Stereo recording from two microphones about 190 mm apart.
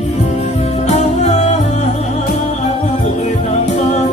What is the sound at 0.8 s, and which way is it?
Music, 35° left (ahead or behind).